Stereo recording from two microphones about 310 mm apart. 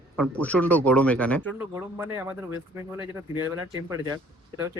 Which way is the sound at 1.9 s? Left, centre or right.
Centre.